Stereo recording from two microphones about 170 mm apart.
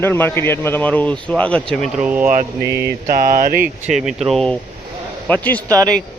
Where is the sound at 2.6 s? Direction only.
75° right (ahead or behind); by 3.7 s 60° right (ahead or behind).